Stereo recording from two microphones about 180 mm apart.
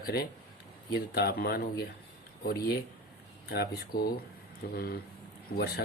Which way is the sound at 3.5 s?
60° left (ahead or behind).